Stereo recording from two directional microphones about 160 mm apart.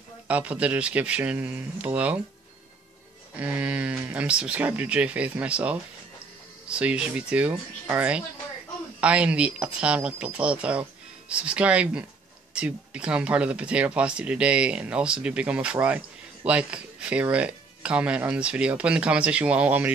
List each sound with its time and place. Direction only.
0.3 s speech: 10° right (ahead or behind)
3.3 s speech: 10° right (ahead or behind)